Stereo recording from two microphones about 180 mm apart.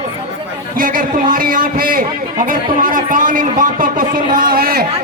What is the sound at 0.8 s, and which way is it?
A man's voice, 50° right (ahead or behind).